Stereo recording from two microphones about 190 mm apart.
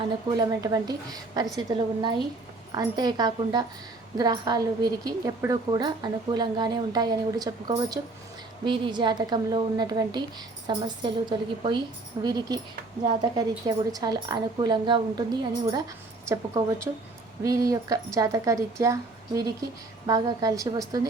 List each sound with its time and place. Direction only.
0.3 s a woman's voice: 20° right (ahead or behind)